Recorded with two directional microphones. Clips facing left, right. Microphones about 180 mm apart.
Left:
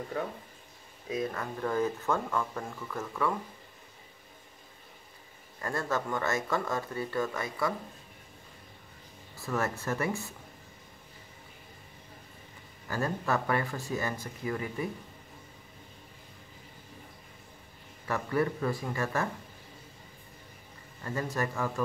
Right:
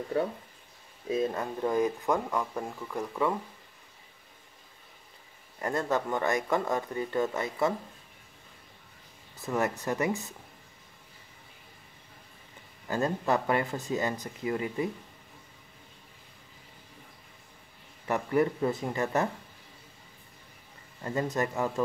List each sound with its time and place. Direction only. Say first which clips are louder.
1.0 s speech: right 4 dB; 25° right (ahead or behind)
5.6 s speech: right 3 dB; 20° right (ahead or behind)
9.4 s speech: right 3 dB; 20° right (ahead or behind)
12.8 s speech: right 3 dB; 20° right (ahead or behind)
18.0 s speech: right 3 dB; 20° right (ahead or behind)
21.0 s speech: right 3 dB; 25° right (ahead or behind)